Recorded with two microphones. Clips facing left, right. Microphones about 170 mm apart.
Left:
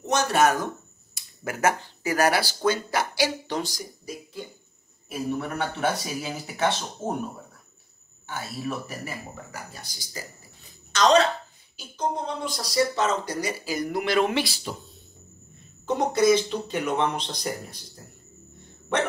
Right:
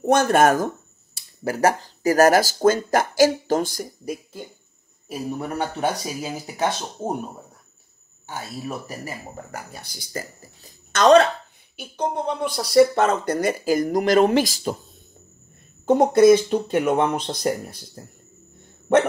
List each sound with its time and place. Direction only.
0.0 s speech: 55° right (ahead or behind)
1.1 s speech: 35° right (ahead or behind); by 4.4 s 55° right (ahead or behind)
5.0 s speech: 35° right (ahead or behind)
8.3 s speech: 35° right (ahead or behind)
9.8 s speech: 60° right (ahead or behind)
10.4 s speech: 45° right (ahead or behind)
15.8 s speech: 50° right (ahead or behind)